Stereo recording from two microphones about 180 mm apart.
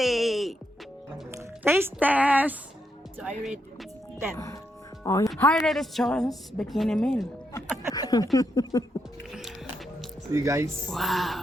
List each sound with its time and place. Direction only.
0.0 s music: centre (ahead or behind)
1.4 s a woman's voice: 15° right (ahead or behind)
4.4 s speech: 15° left (ahead or behind)
5.4 s a woman's voice: 5° left (ahead or behind)
7.9 s speech: 20° left (ahead or behind)
9.3 s music: centre (ahead or behind)
10.3 s speech: 15° right (ahead or behind)
10.8 s a woman's voice: centre (ahead or behind)